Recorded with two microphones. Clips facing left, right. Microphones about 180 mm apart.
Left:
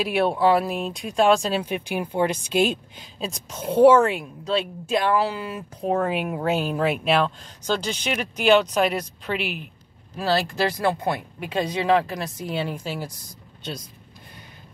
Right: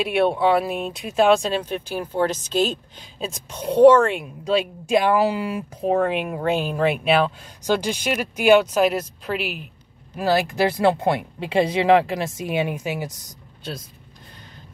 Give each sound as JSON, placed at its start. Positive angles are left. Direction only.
{"t": 0.0, "sound": "speech", "side_deg": 0}
{"t": 3.2, "sound": "speech", "side_deg": 0}
{"t": 4.5, "sound": "speech", "side_deg": -10}
{"t": 10.1, "sound": "speech", "side_deg": -15}